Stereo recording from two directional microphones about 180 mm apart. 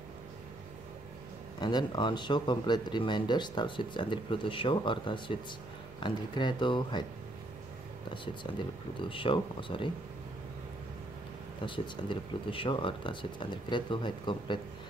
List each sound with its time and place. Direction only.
1.6 s speech: 25° left (ahead or behind)
9.1 s speech: 30° left (ahead or behind)
11.6 s speech: 25° left (ahead or behind)